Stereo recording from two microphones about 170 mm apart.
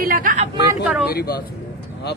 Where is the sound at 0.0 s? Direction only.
55° right (ahead or behind).